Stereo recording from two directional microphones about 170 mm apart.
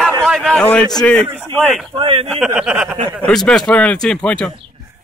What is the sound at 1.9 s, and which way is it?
Speech, 30° right (ahead or behind).